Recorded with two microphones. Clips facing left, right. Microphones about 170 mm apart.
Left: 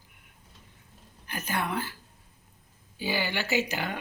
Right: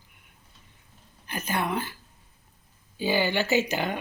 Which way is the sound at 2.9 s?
25° right (ahead or behind).